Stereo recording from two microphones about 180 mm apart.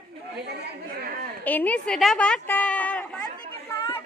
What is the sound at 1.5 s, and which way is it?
A woman's voice, 10° left (ahead or behind).